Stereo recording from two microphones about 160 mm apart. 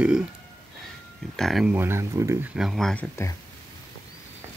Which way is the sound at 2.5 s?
5° right (ahead or behind).